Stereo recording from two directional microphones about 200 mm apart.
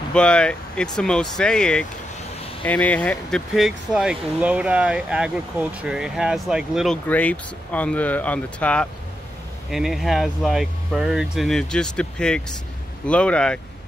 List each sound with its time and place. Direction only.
0.1 s speech: 5° left (ahead or behind)